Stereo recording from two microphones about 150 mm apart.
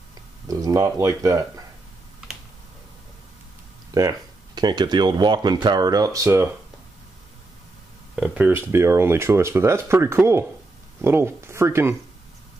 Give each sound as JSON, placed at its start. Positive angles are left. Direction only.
{"t": 0.5, "sound": "speech", "side_deg": -25}
{"t": 3.9, "sound": "speech", "side_deg": -25}
{"t": 8.2, "sound": "speech", "side_deg": -15}